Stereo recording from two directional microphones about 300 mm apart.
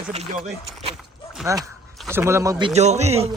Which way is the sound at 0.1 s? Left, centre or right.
Right.